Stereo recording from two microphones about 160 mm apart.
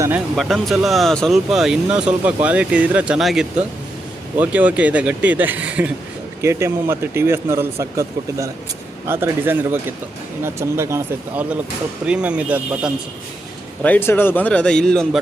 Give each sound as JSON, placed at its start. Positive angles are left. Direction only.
{"t": 0.3, "sound": "a man's voice", "side_deg": 0}
{"t": 13.8, "sound": "speech", "side_deg": 10}